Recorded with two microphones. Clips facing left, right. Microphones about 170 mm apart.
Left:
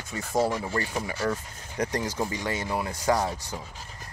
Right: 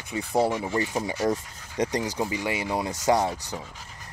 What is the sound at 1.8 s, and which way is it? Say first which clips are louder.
Speech: right 2 dB; 15° right (ahead or behind).